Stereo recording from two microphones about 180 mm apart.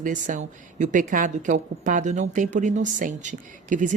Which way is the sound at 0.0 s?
45° right (ahead or behind).